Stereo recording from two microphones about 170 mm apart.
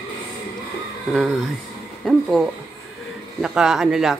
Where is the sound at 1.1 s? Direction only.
Centre (ahead or behind).